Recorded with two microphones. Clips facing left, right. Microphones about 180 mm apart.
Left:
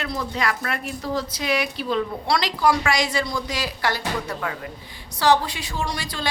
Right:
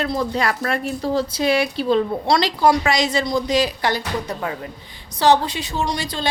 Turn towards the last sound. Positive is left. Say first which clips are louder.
# right 4 dB
turn(degrees=-20)  # may be behind; listen again after turning